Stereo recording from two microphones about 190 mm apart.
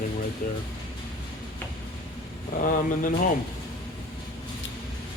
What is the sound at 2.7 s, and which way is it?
Speech, 45° left (ahead or behind).